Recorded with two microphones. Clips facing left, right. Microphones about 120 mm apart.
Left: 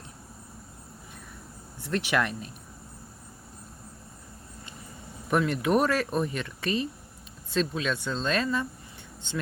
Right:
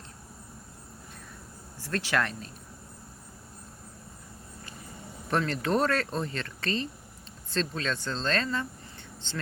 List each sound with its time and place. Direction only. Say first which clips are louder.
1.8 s speech: left 2 dB; 20° left (ahead or behind)
5.3 s speech: left 3 dB; 10° left (ahead or behind)